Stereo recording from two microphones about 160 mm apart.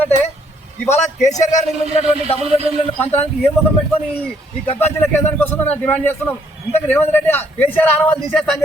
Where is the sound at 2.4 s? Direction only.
35° right (ahead or behind).